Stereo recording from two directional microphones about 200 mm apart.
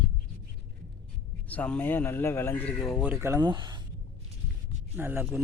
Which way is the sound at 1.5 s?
5° left (ahead or behind).